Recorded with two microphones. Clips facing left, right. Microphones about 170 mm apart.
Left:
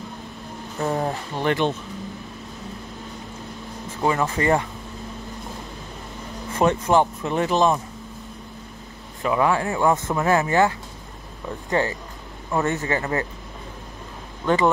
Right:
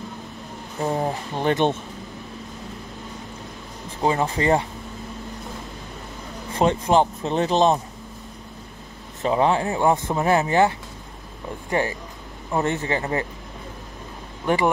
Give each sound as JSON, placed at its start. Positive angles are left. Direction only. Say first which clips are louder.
{"t": 0.8, "sound": "speech", "louder": "even", "side_deg": -15}
{"t": 4.0, "sound": "speech", "louder": "even", "side_deg": -25}
{"t": 6.5, "sound": "speech", "louder": "even", "side_deg": -25}
{"t": 9.2, "sound": "speech", "louder": "right 1 dB", "side_deg": -25}
{"t": 11.8, "sound": "speech", "louder": "left 1 dB", "side_deg": -15}
{"t": 14.4, "sound": "speech", "louder": "left 1 dB", "side_deg": -15}